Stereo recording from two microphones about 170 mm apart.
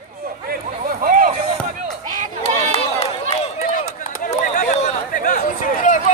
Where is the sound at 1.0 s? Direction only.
55° right (ahead or behind).